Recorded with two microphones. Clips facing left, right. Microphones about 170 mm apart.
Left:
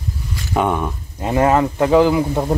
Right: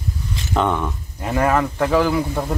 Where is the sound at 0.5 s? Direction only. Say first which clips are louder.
Left 2 dB; 10° left (ahead or behind).